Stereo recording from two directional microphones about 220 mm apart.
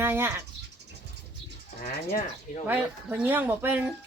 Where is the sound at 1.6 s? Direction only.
40° left (ahead or behind).